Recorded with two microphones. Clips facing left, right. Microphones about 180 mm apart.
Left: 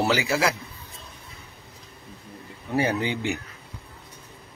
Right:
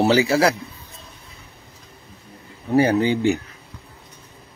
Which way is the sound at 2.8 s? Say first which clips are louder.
Right 7 dB; 35° right (ahead or behind).